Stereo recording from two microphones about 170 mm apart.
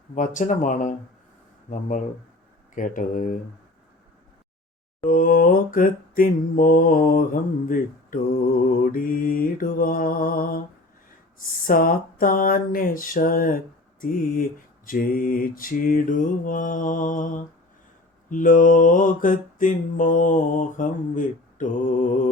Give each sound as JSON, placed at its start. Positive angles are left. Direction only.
{"t": 0.1, "sound": "mantra", "side_deg": 45}
{"t": 2.7, "sound": "mantra", "side_deg": 50}
{"t": 5.0, "sound": "mantra", "side_deg": 50}
{"t": 14.8, "sound": "mantra", "side_deg": 55}